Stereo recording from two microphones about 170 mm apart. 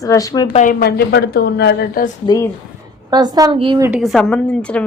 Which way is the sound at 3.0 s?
25° right (ahead or behind).